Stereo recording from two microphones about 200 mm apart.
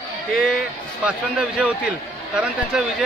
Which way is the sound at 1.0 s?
5° right (ahead or behind).